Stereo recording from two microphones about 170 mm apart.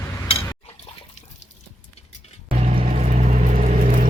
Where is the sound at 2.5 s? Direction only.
35° right (ahead or behind).